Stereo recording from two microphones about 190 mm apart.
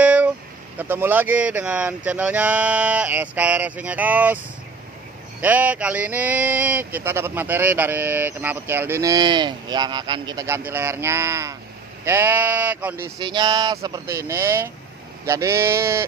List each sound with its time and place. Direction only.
0.0 s a sound: 10° right (ahead or behind)
0.7 s speech: 10° right (ahead or behind)
5.4 s speech: 10° right (ahead or behind)
13.2 s speech: 25° right (ahead or behind)